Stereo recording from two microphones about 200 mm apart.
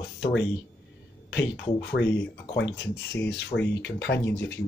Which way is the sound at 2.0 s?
70° left (ahead or behind).